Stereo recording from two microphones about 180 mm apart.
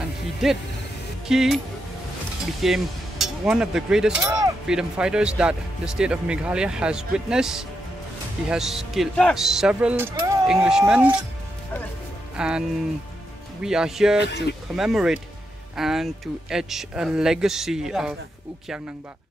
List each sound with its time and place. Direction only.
0.4 s speech: centre (ahead or behind)
2.6 s speech: centre (ahead or behind)
10.5 s speech: 5° right (ahead or behind)
12.4 s speech: 5° right (ahead or behind)
13.7 s speech: 5° right (ahead or behind)
14.2 s speech: 70° left (ahead or behind)
14.8 s speech: 5° right (ahead or behind)